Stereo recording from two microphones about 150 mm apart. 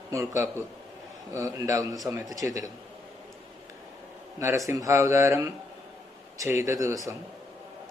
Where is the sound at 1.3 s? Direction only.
20° right (ahead or behind).